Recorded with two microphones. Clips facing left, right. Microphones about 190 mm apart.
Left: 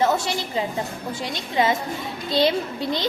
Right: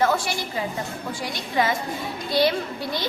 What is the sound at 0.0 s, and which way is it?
A woman's voice, 20° left (ahead or behind).